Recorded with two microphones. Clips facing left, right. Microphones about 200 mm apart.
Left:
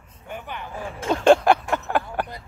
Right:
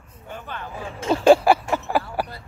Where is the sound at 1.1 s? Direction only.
5° right (ahead or behind).